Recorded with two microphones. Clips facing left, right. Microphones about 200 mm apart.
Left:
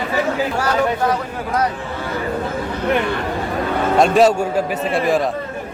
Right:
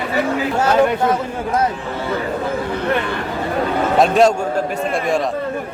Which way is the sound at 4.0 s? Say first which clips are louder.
Even; centre (ahead or behind).